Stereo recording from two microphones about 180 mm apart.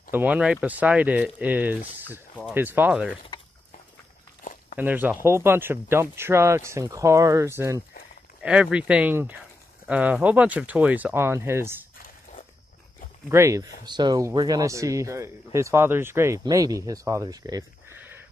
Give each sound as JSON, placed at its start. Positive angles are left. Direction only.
{"t": 0.1, "sound": "speech", "side_deg": -10}
{"t": 4.4, "sound": "walk", "side_deg": 50}
{"t": 4.7, "sound": "speech", "side_deg": -10}
{"t": 13.3, "sound": "speech", "side_deg": -15}